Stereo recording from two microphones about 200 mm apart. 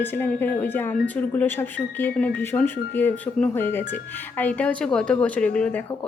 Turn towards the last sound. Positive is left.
turn(degrees=5)  # may be behind; listen again after turning